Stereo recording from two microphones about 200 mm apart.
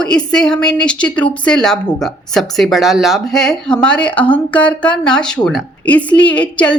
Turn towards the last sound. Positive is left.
turn(degrees=5)  # may be behind; listen again after turning